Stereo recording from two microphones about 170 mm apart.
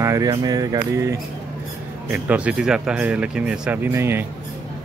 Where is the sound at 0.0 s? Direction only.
20° right (ahead or behind).